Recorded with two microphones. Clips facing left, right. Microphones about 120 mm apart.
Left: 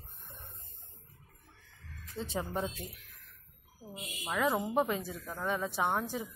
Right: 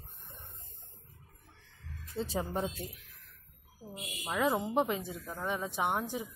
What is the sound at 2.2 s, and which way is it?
Speech, 30° right (ahead or behind).